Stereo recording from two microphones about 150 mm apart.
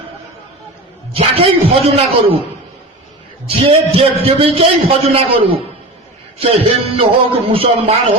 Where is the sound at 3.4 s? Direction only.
40° right (ahead or behind).